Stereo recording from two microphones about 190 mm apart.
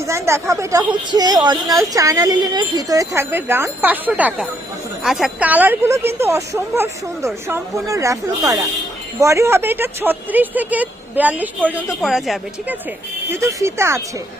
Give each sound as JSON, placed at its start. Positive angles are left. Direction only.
{"t": 0.1, "sound": "speech", "side_deg": -15}
{"t": 13.3, "sound": "speech", "side_deg": -15}